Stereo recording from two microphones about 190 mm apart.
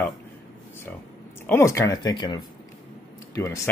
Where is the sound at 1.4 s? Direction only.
15° left (ahead or behind).